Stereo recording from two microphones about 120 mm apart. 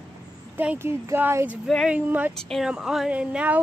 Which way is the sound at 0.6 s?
15° right (ahead or behind).